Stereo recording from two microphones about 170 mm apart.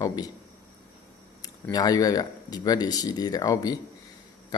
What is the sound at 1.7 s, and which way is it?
Speech, 20° left (ahead or behind).